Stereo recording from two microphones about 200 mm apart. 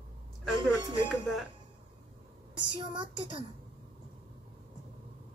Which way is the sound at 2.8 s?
25° right (ahead or behind).